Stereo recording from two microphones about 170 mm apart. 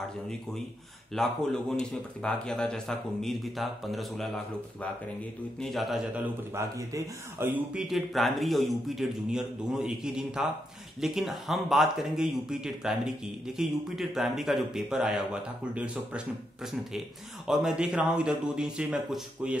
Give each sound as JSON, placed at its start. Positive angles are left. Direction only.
{"t": 1.1, "sound": "speech", "side_deg": 0}
{"t": 5.6, "sound": "speech", "side_deg": 0}
{"t": 6.5, "sound": "speech", "side_deg": -15}
{"t": 17.5, "sound": "speech", "side_deg": 0}